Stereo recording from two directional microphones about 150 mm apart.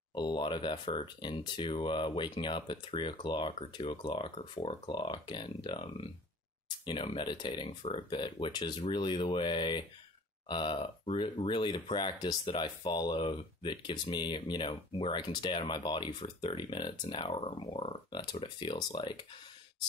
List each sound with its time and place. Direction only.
0.1 s speech: 30° left (ahead or behind)